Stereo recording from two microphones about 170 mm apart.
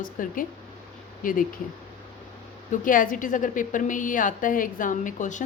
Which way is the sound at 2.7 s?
55° left (ahead or behind).